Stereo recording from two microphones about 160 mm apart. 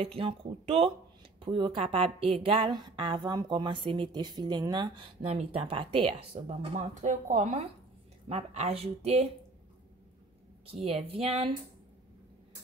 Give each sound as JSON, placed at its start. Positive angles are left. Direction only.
{"t": 0.0, "sound": "a woman's voice", "side_deg": -35}
{"t": 5.2, "sound": "a woman's voice", "side_deg": -40}
{"t": 6.7, "sound": "a woman's voice", "side_deg": -50}
{"t": 10.7, "sound": "a woman's voice", "side_deg": -40}